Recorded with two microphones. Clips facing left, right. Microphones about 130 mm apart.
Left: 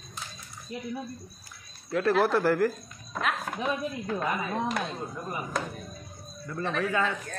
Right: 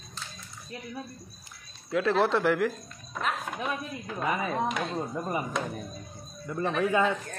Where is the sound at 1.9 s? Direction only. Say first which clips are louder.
Left 1 dB; centre (ahead or behind).